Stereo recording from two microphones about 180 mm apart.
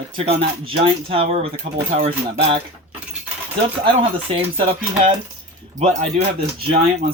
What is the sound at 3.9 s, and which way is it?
Speech, 30° right (ahead or behind).